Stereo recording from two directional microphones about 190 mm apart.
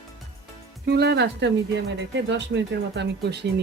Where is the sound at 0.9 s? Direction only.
60° right (ahead or behind).